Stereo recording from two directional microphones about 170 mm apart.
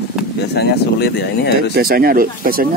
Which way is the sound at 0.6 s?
75° left (ahead or behind).